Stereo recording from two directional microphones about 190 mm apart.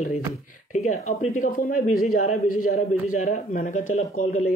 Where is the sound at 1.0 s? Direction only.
40° left (ahead or behind).